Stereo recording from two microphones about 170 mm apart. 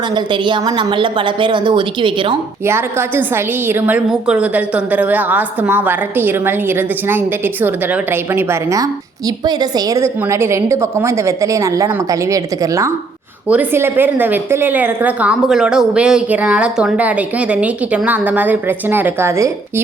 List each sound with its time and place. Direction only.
0.1 s a woman's voice: 25° right (ahead or behind)
2.6 s a woman's voice: 15° right (ahead or behind)